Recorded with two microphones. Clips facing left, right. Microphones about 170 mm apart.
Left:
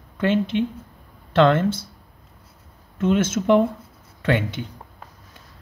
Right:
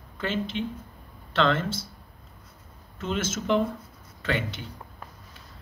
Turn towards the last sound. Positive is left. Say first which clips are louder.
# left 7 dB
turn(degrees=55)  # may be behind; listen again after turning